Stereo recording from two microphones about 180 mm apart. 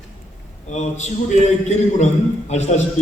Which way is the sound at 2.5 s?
40° left (ahead or behind).